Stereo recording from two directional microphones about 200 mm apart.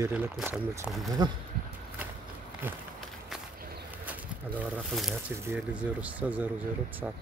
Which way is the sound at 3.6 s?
50° right (ahead or behind).